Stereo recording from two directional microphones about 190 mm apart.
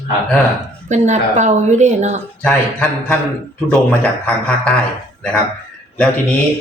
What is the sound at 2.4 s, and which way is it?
A man's voice, 5° left (ahead or behind).